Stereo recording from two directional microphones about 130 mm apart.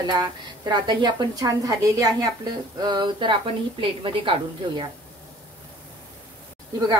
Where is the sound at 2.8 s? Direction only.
35° right (ahead or behind).